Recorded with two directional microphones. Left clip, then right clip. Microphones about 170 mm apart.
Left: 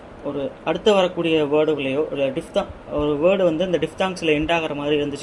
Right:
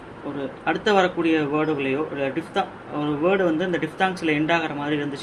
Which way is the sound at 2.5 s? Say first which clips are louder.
Left 4 dB; 55° left (ahead or behind).